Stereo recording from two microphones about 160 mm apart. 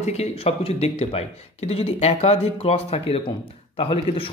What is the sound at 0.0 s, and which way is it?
Speech, 40° left (ahead or behind).